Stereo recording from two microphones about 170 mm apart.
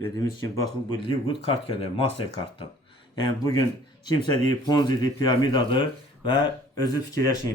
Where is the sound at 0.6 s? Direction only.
30° left (ahead or behind).